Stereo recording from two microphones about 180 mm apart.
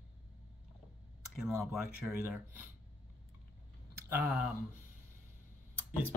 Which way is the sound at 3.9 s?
10° right (ahead or behind).